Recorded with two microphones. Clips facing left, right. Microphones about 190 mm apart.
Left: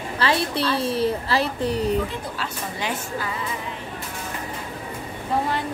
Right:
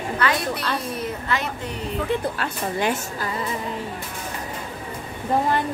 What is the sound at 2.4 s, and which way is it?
Speech, 50° right (ahead or behind).